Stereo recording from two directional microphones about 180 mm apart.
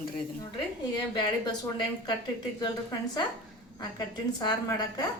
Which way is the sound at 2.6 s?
25° left (ahead or behind).